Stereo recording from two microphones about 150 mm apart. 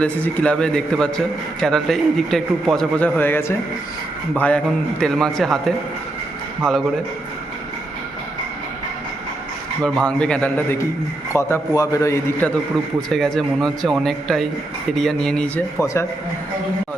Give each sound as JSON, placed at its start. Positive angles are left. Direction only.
{"t": 0.0, "sound": "a man's voice", "side_deg": 10}
{"t": 9.8, "sound": "a man's voice", "side_deg": 5}
{"t": 12.7, "sound": "a man's voice", "side_deg": 0}
{"t": 15.8, "sound": "a man's voice", "side_deg": 20}